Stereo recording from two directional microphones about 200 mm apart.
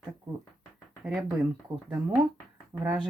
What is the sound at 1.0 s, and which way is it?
Speech, centre (ahead or behind).